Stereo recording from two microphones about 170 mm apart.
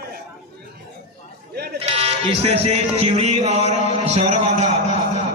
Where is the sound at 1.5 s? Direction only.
70° right (ahead or behind).